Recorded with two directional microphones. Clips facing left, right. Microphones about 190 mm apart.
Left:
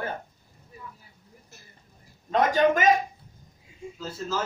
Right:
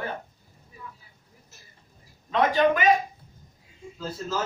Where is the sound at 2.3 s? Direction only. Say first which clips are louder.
Even; 45° left (ahead or behind).